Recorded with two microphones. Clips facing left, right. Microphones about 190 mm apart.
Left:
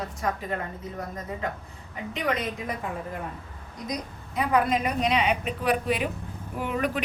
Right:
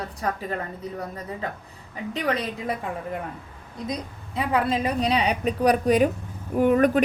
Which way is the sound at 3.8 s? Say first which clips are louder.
Right 2 dB; 30° right (ahead or behind).